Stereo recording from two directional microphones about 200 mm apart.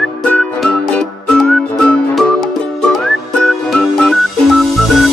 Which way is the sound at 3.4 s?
Centre (ahead or behind).